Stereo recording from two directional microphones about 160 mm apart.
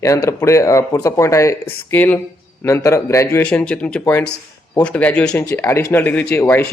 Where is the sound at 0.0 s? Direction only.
20° left (ahead or behind).